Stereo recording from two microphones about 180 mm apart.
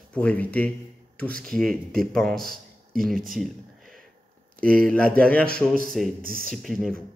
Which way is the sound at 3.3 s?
Centre (ahead or behind).